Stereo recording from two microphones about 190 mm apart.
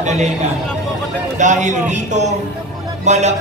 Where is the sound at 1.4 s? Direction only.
40° right (ahead or behind).